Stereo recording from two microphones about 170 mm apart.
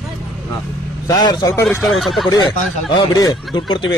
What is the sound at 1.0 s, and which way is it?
Speech, 25° left (ahead or behind).